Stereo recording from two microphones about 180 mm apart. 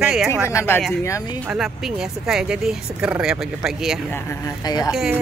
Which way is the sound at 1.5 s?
5° right (ahead or behind).